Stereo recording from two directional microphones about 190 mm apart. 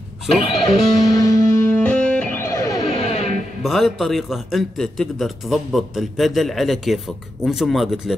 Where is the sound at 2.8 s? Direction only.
35° left (ahead or behind).